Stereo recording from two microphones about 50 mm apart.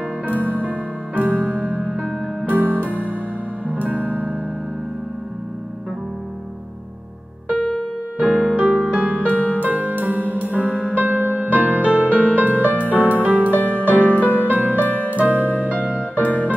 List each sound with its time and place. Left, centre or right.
0.5 s music: right
7.5 s music: left
8.2 s music: right
9.3 s music: left
9.6 s music: right
13.6 s music: left
13.8 s music: right
14.1 s music: left
14.5 s music: right
14.8 s music: left
15.0 s music: right